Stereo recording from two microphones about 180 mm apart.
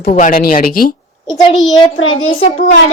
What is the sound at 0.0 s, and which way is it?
Speech, 45° left (ahead or behind).